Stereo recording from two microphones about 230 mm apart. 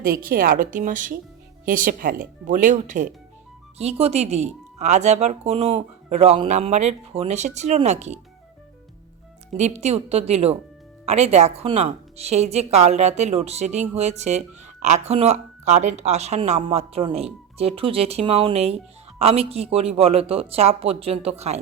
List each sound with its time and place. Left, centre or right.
0.0 s speech: right
9.6 s speech: right